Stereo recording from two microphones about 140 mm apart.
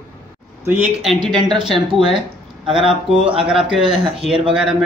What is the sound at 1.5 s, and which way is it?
Speech, 35° right (ahead or behind).